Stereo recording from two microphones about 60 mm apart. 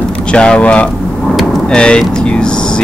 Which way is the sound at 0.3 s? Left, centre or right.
Centre.